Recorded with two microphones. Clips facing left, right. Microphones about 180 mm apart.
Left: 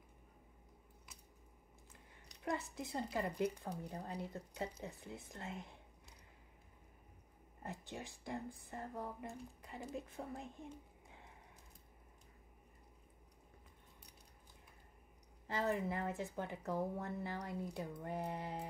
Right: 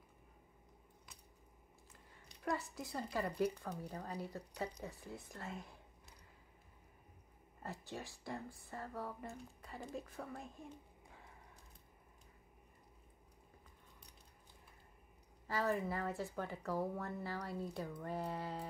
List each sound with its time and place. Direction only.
2.7 s speech: 20° left (ahead or behind)
7.6 s speech: 20° left (ahead or behind)
15.4 s speech: 20° left (ahead or behind)